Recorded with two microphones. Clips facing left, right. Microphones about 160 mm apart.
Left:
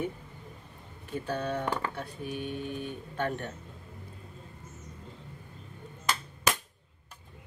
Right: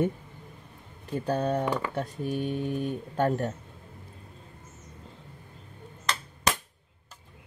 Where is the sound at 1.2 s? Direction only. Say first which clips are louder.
Right 5 dB; 40° right (ahead or behind).